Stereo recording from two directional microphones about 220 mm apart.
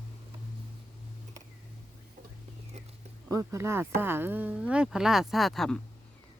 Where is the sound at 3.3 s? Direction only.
15° right (ahead or behind).